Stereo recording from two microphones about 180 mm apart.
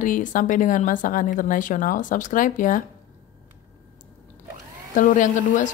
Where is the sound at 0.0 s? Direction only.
45° left (ahead or behind).